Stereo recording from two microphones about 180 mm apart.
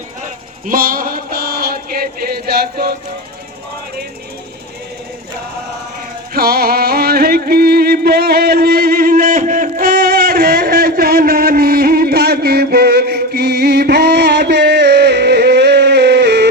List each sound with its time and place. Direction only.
0.7 s mantra: 55° right (ahead or behind)
6.3 s music: 55° right (ahead or behind)